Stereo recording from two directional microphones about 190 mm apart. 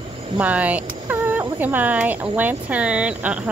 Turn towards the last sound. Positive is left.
turn(degrees=-5)  # may be behind; listen again after turning